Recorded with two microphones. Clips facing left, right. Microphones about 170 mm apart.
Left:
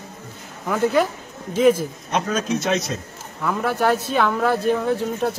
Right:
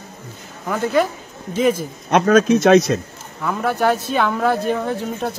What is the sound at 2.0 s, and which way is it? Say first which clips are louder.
Speech: right 10 dB; 70° right (ahead or behind).